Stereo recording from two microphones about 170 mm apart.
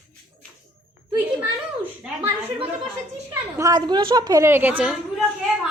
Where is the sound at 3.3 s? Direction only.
20° right (ahead or behind).